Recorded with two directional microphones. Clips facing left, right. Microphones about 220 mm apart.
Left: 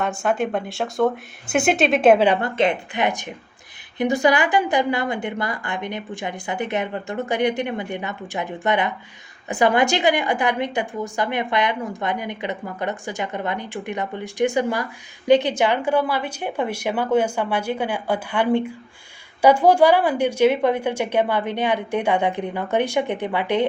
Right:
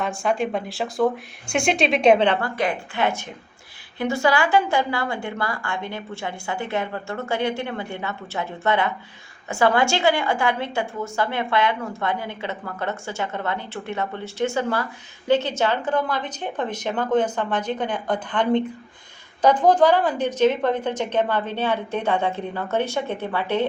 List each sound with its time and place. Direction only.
0.0 s speech: centre (ahead or behind)
2.4 s a woman's voice: 20° left (ahead or behind)